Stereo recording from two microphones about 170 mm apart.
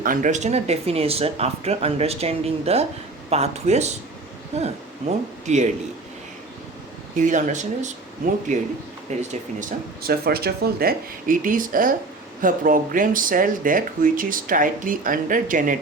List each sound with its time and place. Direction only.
0.0 s speech: 50° right (ahead or behind)
7.2 s speech: 50° right (ahead or behind)